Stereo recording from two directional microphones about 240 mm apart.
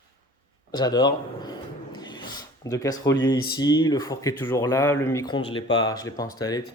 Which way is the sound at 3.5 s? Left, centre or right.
Centre.